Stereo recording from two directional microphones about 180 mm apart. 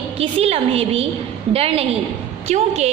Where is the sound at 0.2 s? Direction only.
35° right (ahead or behind).